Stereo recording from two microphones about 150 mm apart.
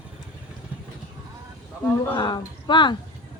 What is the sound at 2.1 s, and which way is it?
Speech, 30° left (ahead or behind).